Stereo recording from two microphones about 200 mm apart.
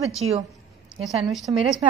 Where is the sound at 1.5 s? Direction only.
20° right (ahead or behind).